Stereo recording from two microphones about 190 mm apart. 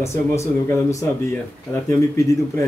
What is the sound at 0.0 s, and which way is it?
Speech, 15° left (ahead or behind).